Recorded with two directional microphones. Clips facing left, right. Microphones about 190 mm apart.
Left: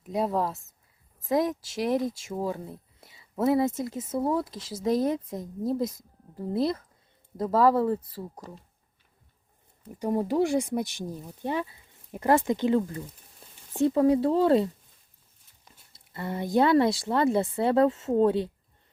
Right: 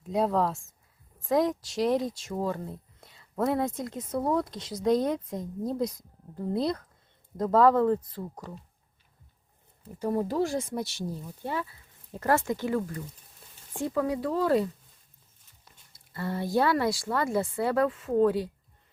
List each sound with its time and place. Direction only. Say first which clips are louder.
0.0 s speech: right 1 dB; centre (ahead or behind)
10.0 s speech: left 2 dB; 15° left (ahead or behind)
15.9 s speech: even; 20° left (ahead or behind)